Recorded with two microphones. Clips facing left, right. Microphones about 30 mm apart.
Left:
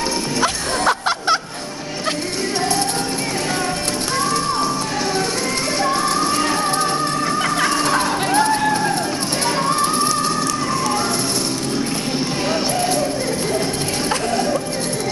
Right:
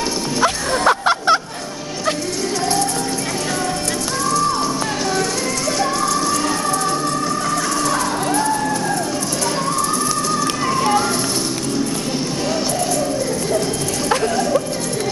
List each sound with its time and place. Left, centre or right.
0.4 s music: centre
8.3 s music: left